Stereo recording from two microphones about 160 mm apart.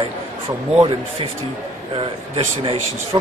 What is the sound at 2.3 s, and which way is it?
Speech, 35° right (ahead or behind).